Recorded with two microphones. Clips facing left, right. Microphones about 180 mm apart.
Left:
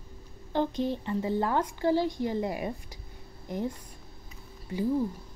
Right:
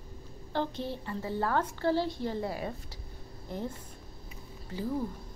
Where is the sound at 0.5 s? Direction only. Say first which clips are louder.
Left 5 dB; 15° left (ahead or behind).